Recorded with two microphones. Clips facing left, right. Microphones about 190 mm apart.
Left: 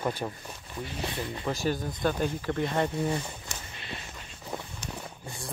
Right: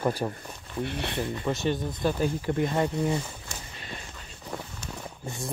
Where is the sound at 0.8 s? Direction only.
65° right (ahead or behind).